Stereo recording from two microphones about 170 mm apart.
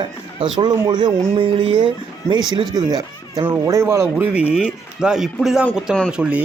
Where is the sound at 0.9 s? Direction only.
25° right (ahead or behind).